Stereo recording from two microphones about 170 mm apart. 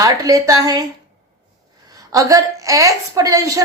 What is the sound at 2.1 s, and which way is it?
Female singing, 20° right (ahead or behind).